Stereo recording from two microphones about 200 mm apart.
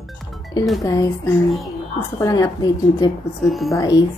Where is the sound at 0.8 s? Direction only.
15° left (ahead or behind).